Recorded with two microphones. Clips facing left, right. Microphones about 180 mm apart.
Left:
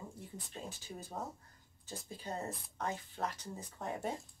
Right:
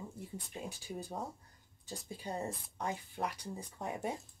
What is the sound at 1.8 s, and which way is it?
Speech, 15° right (ahead or behind).